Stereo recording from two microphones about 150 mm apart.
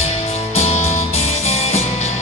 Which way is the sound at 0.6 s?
45° left (ahead or behind).